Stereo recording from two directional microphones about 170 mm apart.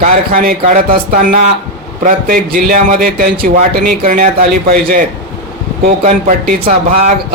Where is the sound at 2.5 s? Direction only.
55° right (ahead or behind).